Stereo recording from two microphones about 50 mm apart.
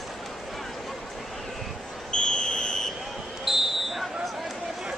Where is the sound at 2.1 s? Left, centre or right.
Centre.